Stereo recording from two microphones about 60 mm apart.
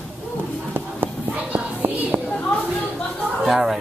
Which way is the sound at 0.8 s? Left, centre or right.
Right.